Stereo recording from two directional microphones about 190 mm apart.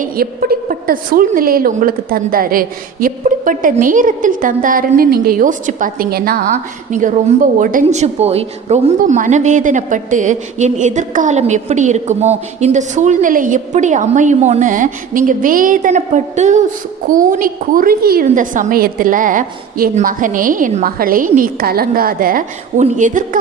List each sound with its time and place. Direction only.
0.0 s a woman's voice: 50° right (ahead or behind)
6.9 s a woman's voice: 40° right (ahead or behind)